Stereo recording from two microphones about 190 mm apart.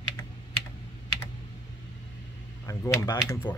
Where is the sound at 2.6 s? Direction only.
15° left (ahead or behind).